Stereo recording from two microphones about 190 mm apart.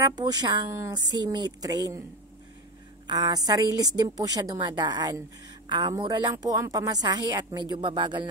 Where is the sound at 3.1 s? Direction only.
20° right (ahead or behind).